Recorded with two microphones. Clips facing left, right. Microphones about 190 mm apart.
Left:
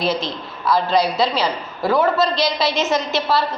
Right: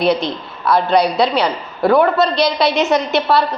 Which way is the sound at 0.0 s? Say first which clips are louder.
Right 5 dB; 60° right (ahead or behind).